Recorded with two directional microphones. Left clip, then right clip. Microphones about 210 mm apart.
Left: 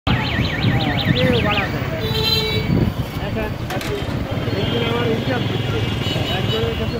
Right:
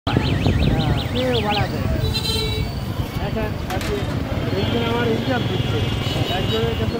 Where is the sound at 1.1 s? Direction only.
35° right (ahead or behind).